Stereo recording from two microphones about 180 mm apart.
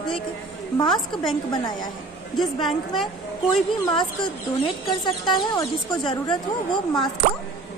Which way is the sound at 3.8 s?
25° left (ahead or behind).